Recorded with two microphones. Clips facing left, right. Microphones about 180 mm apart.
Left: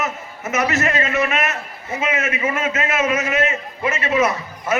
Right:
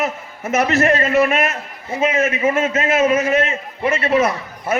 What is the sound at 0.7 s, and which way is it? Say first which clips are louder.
Speech: right 5 dB; 55° right (ahead or behind).